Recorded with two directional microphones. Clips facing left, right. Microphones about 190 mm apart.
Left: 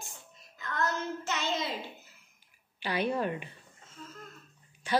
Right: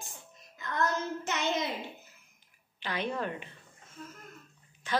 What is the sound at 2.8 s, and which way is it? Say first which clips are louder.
Speech: left 3 dB; 10° left (ahead or behind).